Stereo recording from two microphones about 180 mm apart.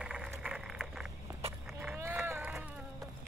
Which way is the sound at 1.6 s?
10° right (ahead or behind).